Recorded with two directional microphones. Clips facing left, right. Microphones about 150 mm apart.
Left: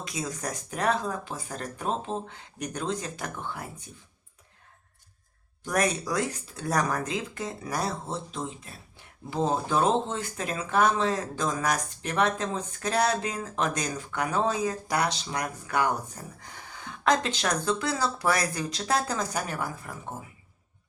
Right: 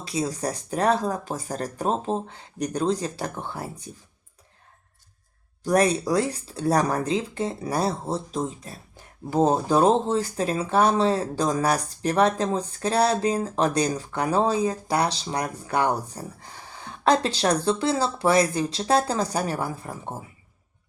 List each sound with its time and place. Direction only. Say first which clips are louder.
0.0 s speech: right 6 dB; 30° right (ahead or behind)
5.6 s speech: right 6 dB; 30° right (ahead or behind)